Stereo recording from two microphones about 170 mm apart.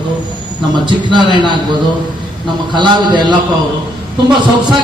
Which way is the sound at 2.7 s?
25° right (ahead or behind).